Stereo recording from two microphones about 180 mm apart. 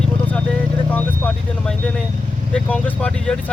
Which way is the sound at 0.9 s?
10° left (ahead or behind).